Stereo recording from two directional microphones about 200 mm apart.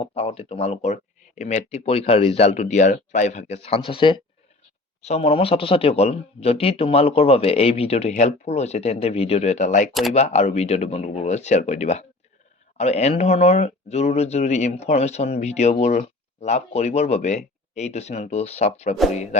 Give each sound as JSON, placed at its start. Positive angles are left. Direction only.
{"t": 0.0, "sound": "speech", "side_deg": 30}